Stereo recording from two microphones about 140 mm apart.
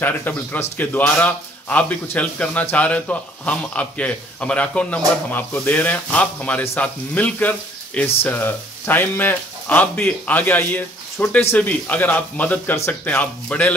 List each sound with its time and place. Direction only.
0.0 s a man's voice: 15° left (ahead or behind)